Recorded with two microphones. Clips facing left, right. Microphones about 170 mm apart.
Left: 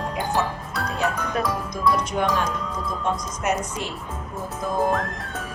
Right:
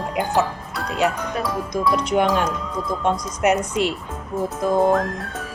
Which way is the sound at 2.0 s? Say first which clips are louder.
Right 4 dB; 70° right (ahead or behind).